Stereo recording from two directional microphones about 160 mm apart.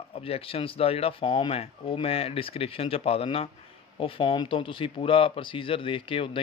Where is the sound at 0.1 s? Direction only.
35° left (ahead or behind).